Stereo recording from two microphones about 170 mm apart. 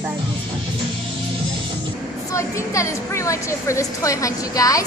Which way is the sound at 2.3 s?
15° left (ahead or behind).